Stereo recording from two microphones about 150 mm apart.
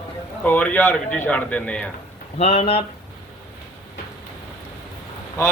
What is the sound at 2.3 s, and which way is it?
Speech, 45° left (ahead or behind).